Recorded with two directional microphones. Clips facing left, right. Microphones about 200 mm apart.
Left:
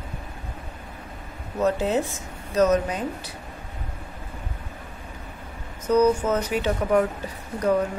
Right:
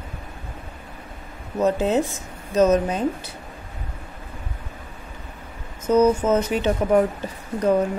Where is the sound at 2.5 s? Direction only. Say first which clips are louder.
Right 3 dB; 20° right (ahead or behind).